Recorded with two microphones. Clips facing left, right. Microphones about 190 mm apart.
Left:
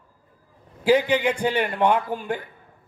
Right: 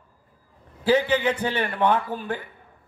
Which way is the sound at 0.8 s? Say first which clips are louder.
Left 1 dB; 10° left (ahead or behind).